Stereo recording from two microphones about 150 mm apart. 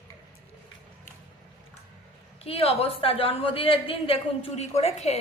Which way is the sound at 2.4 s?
40° left (ahead or behind).